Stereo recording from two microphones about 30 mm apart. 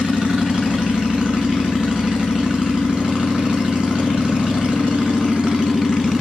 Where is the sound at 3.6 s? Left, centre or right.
Centre.